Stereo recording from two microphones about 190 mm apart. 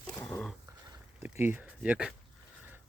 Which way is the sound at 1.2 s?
10° right (ahead or behind).